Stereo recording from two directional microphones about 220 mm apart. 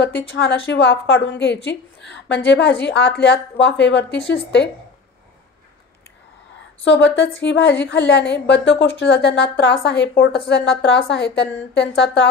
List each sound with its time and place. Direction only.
0.7 s a woman's voice: 50° left (ahead or behind)
6.8 s a woman's voice: 55° left (ahead or behind)